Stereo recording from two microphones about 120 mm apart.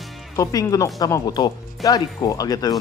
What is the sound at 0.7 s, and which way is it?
Speech, 30° left (ahead or behind).